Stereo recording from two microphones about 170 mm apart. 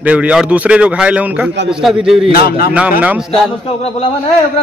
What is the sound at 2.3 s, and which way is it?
Speech, 65° left (ahead or behind).